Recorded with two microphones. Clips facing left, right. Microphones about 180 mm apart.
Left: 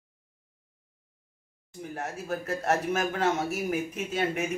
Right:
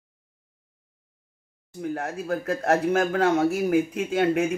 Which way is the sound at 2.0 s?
70° right (ahead or behind).